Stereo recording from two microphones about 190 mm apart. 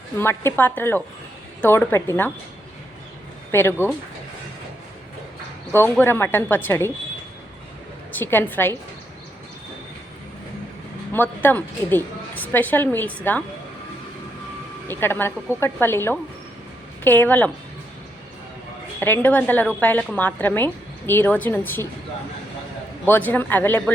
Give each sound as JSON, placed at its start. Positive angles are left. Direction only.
{"t": 0.2, "sound": "a woman's voice", "side_deg": 10}
{"t": 3.5, "sound": "a woman's voice", "side_deg": 10}
{"t": 5.7, "sound": "a woman's voice", "side_deg": 10}
{"t": 8.2, "sound": "a woman's voice", "side_deg": 10}
{"t": 11.1, "sound": "a woman's voice", "side_deg": 10}
{"t": 14.8, "sound": "a woman's voice", "side_deg": 10}
{"t": 18.9, "sound": "a woman's voice", "side_deg": 10}
{"t": 23.0, "sound": "a woman's voice", "side_deg": 10}